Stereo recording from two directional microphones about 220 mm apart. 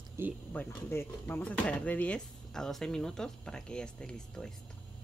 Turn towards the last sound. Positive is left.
turn(degrees=5)  # may be behind; listen again after turning